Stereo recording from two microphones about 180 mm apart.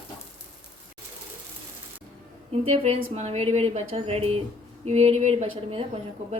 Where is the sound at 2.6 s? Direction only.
40° right (ahead or behind).